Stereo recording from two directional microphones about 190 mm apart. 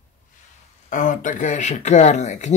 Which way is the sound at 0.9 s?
45° left (ahead or behind).